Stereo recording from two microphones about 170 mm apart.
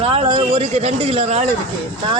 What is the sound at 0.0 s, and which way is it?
A man's voice, 30° right (ahead or behind).